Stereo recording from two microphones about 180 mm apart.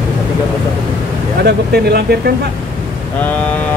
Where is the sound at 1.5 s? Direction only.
65° right (ahead or behind).